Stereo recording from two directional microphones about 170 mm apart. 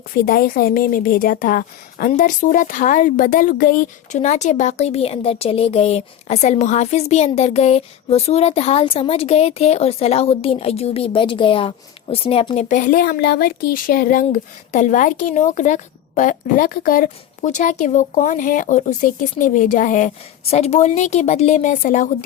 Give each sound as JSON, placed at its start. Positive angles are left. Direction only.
{"t": 0.1, "sound": "speech", "side_deg": 60}